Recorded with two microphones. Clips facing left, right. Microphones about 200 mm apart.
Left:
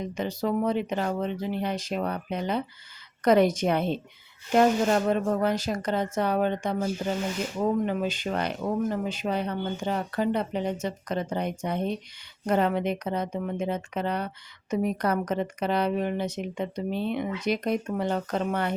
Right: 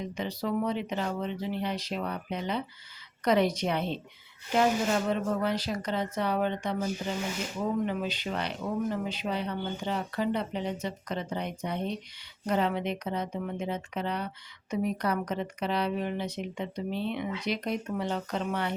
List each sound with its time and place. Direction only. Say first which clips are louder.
0.0 s speech: left 4 dB; 50° left (ahead or behind)